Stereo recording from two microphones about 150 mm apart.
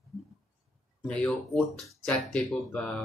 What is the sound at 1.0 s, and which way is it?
Speech, 5° left (ahead or behind).